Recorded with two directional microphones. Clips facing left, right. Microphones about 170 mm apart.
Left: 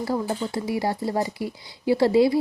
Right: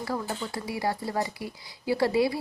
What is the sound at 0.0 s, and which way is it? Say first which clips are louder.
A woman's voice: left 6 dB; 25° left (ahead or behind).